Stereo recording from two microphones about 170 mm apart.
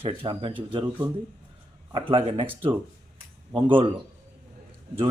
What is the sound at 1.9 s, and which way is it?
Speech, 30° right (ahead or behind).